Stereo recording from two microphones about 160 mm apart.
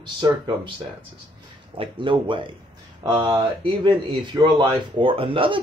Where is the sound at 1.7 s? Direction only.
30° right (ahead or behind).